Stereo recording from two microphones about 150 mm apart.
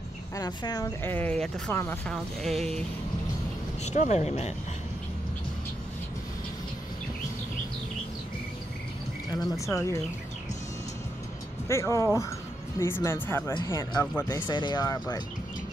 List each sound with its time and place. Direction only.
0.4 s speech: 25° left (ahead or behind)
1.0 s speech: 10° left (ahead or behind)
2.4 s speech: 5° left (ahead or behind)
3.8 s speech: 50° left (ahead or behind)
9.3 s speech: 25° left (ahead or behind)
11.6 s speech: 20° left (ahead or behind)